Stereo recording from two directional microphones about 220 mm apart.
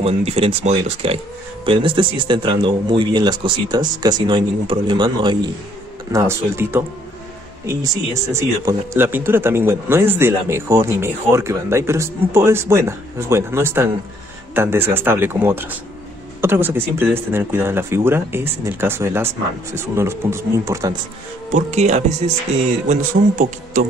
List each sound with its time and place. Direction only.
0.0 s speech: 30° right (ahead or behind)
21.5 s speech: 30° right (ahead or behind)